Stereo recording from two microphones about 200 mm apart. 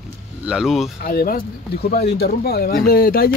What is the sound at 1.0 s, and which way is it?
Speech, 45° left (ahead or behind).